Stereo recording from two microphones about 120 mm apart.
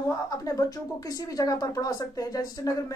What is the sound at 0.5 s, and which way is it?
Speech, 30° left (ahead or behind).